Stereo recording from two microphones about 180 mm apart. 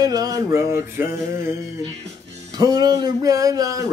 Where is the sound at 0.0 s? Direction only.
20° right (ahead or behind).